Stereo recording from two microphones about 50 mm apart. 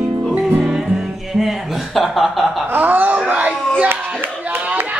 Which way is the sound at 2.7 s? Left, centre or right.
Right.